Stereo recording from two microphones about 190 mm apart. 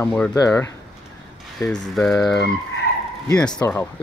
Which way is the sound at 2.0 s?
Centre (ahead or behind).